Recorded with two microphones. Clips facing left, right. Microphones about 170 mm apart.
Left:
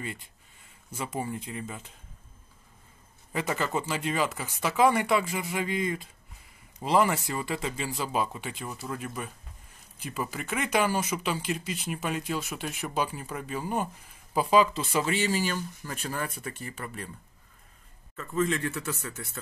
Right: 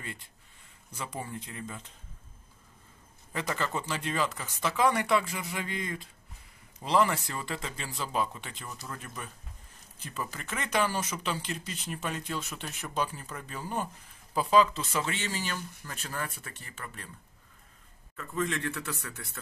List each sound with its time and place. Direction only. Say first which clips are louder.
1.3 s speech: left 4 dB; 10° left (ahead or behind)
3.3 s speech: left 3 dB; 10° left (ahead or behind)
18.1 s a man's voice: left 4 dB; centre (ahead or behind)